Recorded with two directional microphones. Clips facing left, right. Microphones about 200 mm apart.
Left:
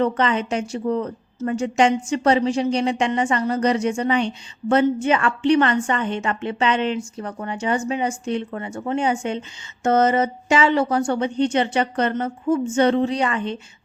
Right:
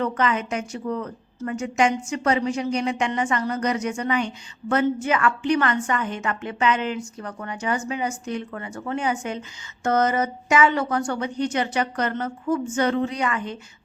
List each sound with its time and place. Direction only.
0.0 s a woman's voice: 30° left (ahead or behind)